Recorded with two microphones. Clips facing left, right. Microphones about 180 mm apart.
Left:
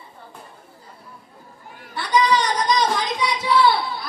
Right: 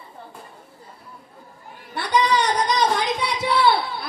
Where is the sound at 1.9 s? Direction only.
60° right (ahead or behind).